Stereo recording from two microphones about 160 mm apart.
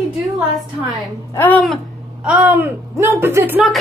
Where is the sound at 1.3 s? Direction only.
10° left (ahead or behind).